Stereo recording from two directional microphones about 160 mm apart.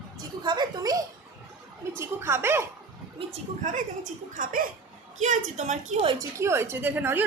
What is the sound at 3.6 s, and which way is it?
Speech, 50° right (ahead or behind).